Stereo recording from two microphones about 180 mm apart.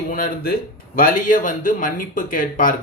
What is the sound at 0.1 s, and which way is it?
A man's voice, 50° left (ahead or behind).